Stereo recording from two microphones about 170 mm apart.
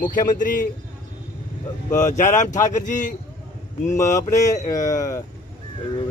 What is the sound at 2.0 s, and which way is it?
Speech, 45° left (ahead or behind).